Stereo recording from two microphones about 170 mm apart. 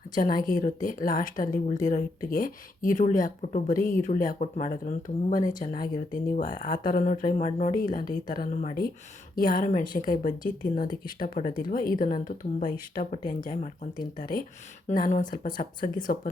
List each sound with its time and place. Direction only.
0.2 s a woman's voice: 55° left (ahead or behind)